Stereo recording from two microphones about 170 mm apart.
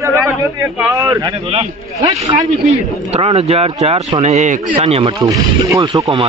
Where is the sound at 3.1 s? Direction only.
35° right (ahead or behind).